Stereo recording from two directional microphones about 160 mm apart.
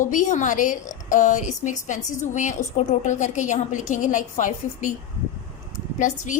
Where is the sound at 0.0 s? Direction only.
55° left (ahead or behind).